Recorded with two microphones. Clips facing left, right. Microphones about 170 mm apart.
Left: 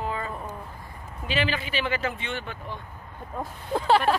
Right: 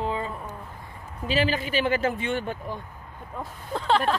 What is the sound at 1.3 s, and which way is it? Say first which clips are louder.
A man's voice: right 3 dB; 40° right (ahead or behind).